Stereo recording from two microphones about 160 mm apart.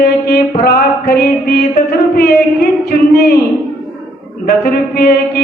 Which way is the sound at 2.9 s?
80° left.